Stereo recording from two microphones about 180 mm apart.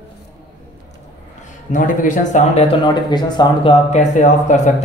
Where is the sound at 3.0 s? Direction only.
25° left (ahead or behind).